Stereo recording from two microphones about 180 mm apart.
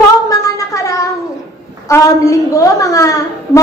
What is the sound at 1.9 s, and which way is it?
A woman's voice, 20° left (ahead or behind).